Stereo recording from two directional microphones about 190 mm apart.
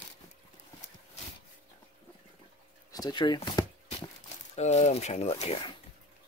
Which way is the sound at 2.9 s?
20° left (ahead or behind).